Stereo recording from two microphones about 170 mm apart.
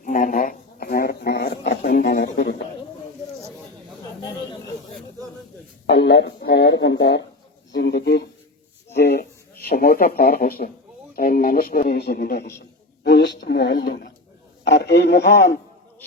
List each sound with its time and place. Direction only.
0.0 s a sound: 50° left (ahead or behind); by 2.6 s 75° left (ahead or behind)
5.8 s speech: 90° left
7.7 s a woman's voice: 75° left (ahead or behind)